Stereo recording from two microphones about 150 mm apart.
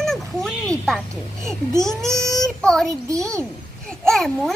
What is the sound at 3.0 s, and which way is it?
Speech, 20° right (ahead or behind).